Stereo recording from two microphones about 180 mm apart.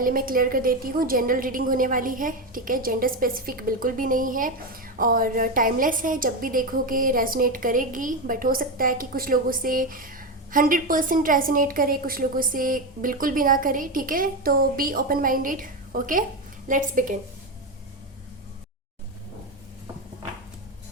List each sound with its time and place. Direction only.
0.0 s a woman's voice: 50° right (ahead or behind)